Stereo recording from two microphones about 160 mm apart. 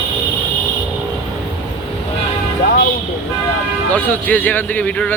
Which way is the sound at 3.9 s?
10° left (ahead or behind).